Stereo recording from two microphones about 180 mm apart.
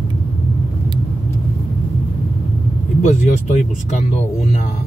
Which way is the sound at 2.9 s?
40° left (ahead or behind).